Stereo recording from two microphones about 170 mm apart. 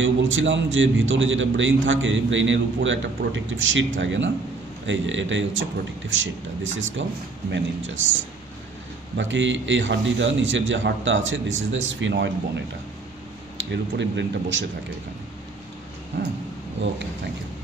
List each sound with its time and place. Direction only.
0.0 s a man's voice: 90° right
13.7 s a man's voice: 90° right